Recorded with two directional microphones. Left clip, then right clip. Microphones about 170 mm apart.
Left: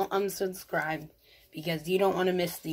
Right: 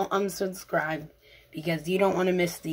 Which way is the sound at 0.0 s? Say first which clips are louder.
Right 2 dB; 25° left (ahead or behind).